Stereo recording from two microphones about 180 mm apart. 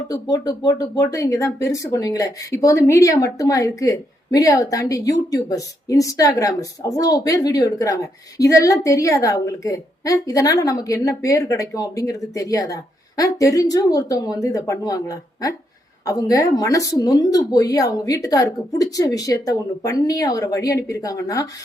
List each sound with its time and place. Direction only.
0.1 s speech: 20° left (ahead or behind)